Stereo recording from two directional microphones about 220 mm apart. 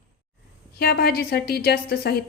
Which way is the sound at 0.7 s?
45° left (ahead or behind).